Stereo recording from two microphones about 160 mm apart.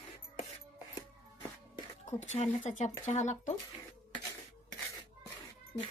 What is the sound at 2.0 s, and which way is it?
Speech, 45° left (ahead or behind).